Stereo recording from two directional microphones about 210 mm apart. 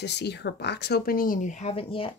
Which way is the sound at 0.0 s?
55° left (ahead or behind).